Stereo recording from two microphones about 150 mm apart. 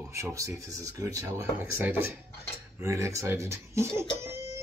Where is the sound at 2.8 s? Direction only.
20° right (ahead or behind).